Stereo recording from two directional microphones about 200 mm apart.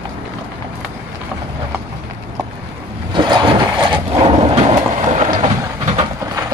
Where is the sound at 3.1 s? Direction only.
25° right (ahead or behind).